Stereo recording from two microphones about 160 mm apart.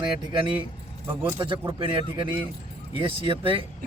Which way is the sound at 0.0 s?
30° right (ahead or behind).